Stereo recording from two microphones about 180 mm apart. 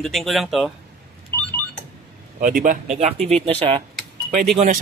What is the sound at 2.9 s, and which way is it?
Speech, 40° right (ahead or behind).